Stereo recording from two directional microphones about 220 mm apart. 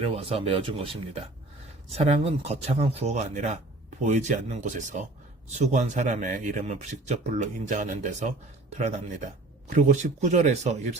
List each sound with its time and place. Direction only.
0.0 s speech: 25° right (ahead or behind)
9.6 s speech: 35° right (ahead or behind)